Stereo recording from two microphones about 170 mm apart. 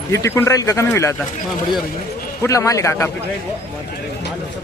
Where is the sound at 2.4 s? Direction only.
20° left (ahead or behind).